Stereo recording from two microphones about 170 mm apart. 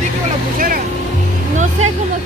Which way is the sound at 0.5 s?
55° right (ahead or behind).